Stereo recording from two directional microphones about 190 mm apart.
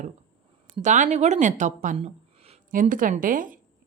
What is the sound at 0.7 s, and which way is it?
A woman's voice, 40° right (ahead or behind).